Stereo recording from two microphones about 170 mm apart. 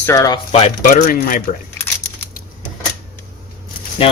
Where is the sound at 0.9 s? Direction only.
55° left (ahead or behind).